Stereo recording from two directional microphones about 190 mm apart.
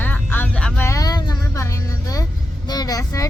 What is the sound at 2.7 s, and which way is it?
Speech, 20° left (ahead or behind).